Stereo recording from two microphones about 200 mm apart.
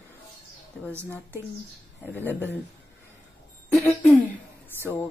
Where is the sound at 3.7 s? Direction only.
10° left (ahead or behind).